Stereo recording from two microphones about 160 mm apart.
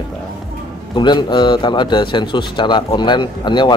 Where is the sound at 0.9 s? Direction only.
30° left (ahead or behind).